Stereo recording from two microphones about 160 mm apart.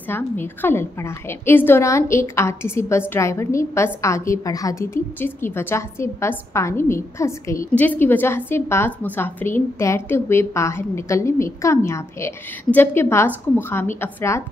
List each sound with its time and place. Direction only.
0.1 s a woman's voice: 15° left (ahead or behind)